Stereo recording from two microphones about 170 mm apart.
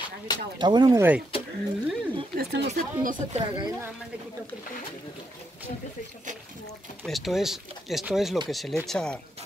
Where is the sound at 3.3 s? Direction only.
30° right (ahead or behind).